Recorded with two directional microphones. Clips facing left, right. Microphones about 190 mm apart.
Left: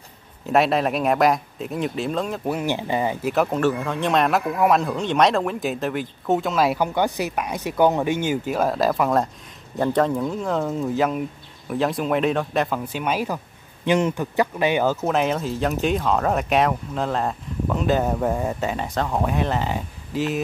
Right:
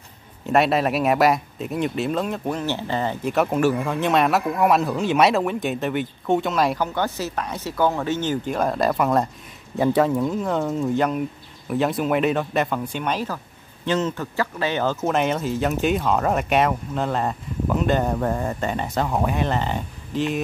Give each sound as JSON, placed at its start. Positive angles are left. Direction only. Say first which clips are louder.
{"t": 0.5, "sound": "speech", "louder": "even", "side_deg": 0}
{"t": 3.3, "sound": "speech", "louder": "right 2 dB", "side_deg": -5}
{"t": 6.8, "sound": "speech", "louder": "left 2 dB", "side_deg": 15}
{"t": 15.0, "sound": "speech", "louder": "even", "side_deg": 0}